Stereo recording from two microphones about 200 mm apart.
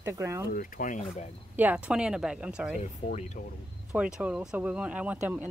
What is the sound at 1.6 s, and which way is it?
Speech, 5° right (ahead or behind).